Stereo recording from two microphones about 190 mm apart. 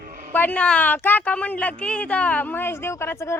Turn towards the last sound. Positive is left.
turn(degrees=15)  # may be behind; listen again after turning